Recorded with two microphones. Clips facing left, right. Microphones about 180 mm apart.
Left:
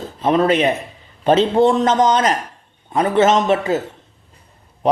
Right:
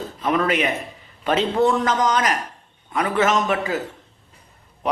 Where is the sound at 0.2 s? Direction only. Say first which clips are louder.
Left 6 dB; 30° left (ahead or behind).